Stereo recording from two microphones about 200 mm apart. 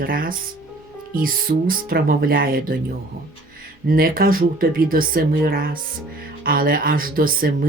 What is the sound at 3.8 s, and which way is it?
Speech, 45° right (ahead or behind).